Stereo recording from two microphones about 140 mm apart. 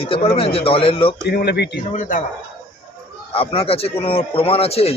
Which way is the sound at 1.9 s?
65° left (ahead or behind).